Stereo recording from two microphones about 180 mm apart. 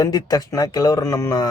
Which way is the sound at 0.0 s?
20° left (ahead or behind).